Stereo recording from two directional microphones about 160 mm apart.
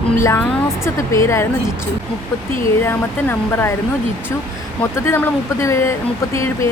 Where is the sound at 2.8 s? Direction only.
15° left (ahead or behind).